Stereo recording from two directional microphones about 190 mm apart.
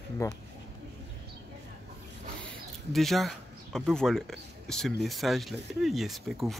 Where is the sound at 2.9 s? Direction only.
Centre (ahead or behind).